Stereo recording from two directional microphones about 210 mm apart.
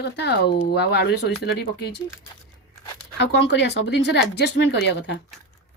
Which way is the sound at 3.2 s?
55° left (ahead or behind).